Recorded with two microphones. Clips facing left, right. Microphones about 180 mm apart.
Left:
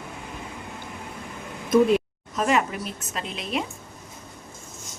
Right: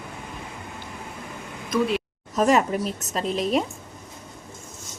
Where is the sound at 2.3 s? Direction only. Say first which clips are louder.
Right 4 dB; 40° right (ahead or behind).